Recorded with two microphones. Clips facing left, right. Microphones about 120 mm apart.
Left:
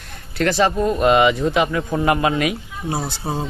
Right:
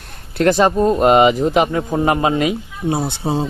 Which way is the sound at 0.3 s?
50° right (ahead or behind).